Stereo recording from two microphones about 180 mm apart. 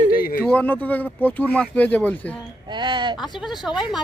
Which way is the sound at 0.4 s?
10° left (ahead or behind).